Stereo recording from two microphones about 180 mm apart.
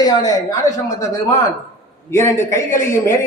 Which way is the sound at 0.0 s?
20° left (ahead or behind).